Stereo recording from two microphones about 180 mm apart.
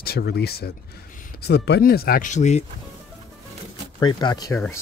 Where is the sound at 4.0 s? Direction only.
25° left (ahead or behind).